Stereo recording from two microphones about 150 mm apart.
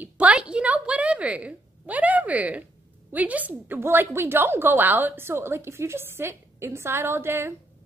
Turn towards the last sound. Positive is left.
turn(degrees=-15)  # may be behind; listen again after turning